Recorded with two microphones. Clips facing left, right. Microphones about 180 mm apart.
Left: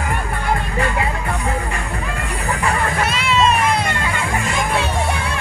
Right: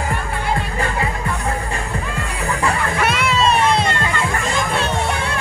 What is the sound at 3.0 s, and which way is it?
Music, 60° right (ahead or behind).